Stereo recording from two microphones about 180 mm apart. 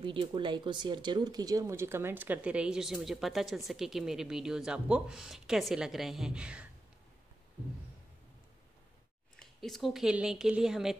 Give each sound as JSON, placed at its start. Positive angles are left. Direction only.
{"t": 0.0, "sound": "speech", "side_deg": -30}
{"t": 9.4, "sound": "speech", "side_deg": 0}